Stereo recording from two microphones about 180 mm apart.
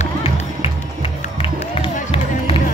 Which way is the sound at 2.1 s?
30° left (ahead or behind).